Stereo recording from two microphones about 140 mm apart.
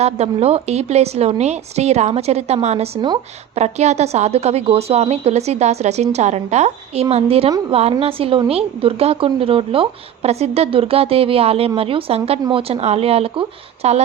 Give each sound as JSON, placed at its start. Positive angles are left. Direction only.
{"t": 0.0, "sound": "a woman's voice", "side_deg": -50}